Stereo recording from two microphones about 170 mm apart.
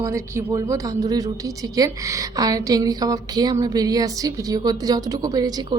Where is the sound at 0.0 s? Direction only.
15° right (ahead or behind).